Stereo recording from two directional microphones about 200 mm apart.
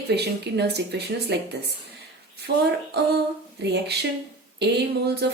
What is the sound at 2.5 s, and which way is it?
A woman's voice, 55° right (ahead or behind).